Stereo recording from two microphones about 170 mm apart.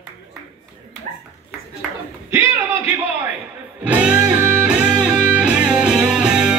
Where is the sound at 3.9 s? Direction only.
10° right (ahead or behind).